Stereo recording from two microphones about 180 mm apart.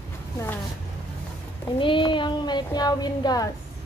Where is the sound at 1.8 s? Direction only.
25° left (ahead or behind).